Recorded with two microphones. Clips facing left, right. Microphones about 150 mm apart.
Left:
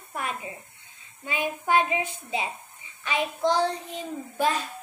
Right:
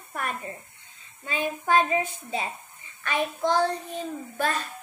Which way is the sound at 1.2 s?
15° left (ahead or behind).